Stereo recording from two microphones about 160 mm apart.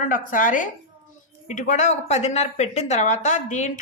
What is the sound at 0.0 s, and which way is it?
A woman's voice, 55° left (ahead or behind).